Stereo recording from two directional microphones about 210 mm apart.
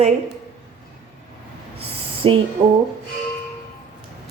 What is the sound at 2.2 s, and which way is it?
Speech, 25° right (ahead or behind).